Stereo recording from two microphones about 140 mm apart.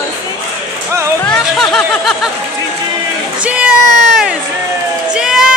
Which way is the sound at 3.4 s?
10° right (ahead or behind).